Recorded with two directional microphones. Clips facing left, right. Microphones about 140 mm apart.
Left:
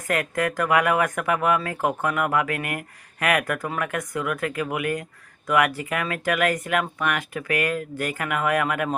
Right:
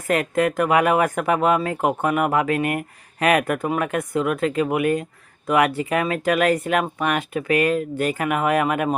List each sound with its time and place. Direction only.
0.1 s speech: 25° right (ahead or behind)